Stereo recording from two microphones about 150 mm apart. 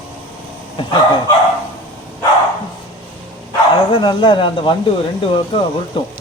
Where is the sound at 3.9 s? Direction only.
35° left (ahead or behind).